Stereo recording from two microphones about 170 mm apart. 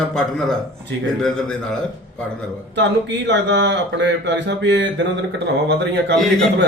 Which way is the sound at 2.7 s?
90° right.